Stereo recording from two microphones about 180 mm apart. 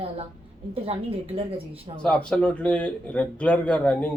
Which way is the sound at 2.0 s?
5° left (ahead or behind).